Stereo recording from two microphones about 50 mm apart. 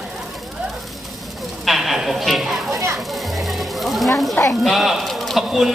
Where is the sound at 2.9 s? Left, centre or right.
Centre.